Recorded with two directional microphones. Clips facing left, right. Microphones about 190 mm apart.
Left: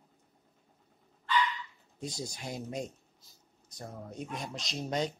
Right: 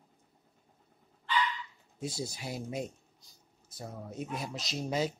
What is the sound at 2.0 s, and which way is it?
Speech, 5° right (ahead or behind).